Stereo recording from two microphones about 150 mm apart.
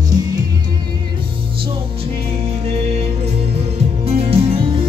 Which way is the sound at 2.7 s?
45° right (ahead or behind).